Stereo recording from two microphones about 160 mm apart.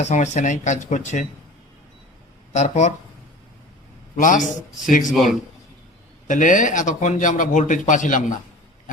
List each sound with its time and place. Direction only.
0.0 s speech: 45° left (ahead or behind)
2.5 s speech: 45° left (ahead or behind)
4.2 s speech: 55° left (ahead or behind)
5.1 s speech: centre (ahead or behind)
6.2 s speech: 55° left (ahead or behind)